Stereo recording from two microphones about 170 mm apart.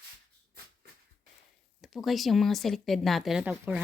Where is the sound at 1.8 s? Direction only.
Centre (ahead or behind).